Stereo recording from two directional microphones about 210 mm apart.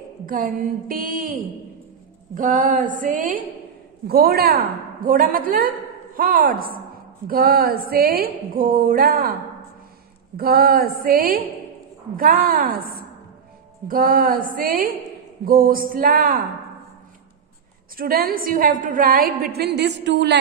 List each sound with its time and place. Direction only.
0.3 s mantra: 40° right (ahead or behind)
4.1 s a woman's voice: 45° right (ahead or behind)
13.8 s a woman's voice: 40° right (ahead or behind)
17.9 s a woman's voice: 45° right (ahead or behind)